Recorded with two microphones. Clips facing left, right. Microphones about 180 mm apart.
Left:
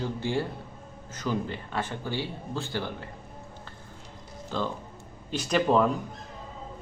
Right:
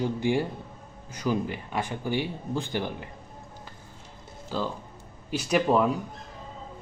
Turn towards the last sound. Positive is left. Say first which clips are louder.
# even
turn(degrees=-10)  # may be behind; listen again after turning